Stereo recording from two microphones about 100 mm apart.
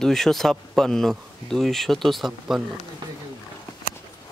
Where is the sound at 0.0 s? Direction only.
5° left (ahead or behind).